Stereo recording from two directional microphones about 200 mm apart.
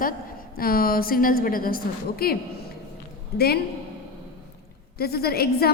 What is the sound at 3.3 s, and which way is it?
Speech, 50° left (ahead or behind).